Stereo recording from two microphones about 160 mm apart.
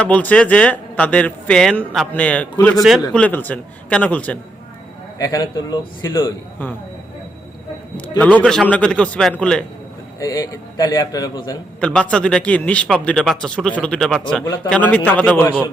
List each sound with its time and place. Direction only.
0.0 s speech: 10° left (ahead or behind)
5.2 s a man's voice: 25° left (ahead or behind)
8.2 s a man's voice: 10° left (ahead or behind)
10.2 s a man's voice: 20° left (ahead or behind)
11.8 s speech: 5° left (ahead or behind)